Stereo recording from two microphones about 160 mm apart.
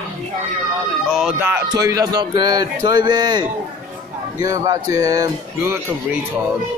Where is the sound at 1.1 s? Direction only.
5° right (ahead or behind).